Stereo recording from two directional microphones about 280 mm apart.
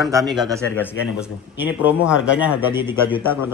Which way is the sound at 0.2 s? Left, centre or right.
Centre.